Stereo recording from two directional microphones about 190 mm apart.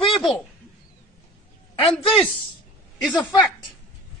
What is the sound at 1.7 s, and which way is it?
Speech, 30° left (ahead or behind).